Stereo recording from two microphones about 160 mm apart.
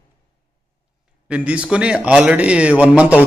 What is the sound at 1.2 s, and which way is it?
A man's voice, 5° right (ahead or behind).